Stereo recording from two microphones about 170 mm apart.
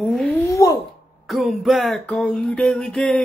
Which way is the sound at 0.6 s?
20° left (ahead or behind).